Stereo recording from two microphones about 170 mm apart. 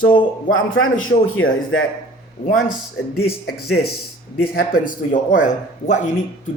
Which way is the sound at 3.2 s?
65° left (ahead or behind).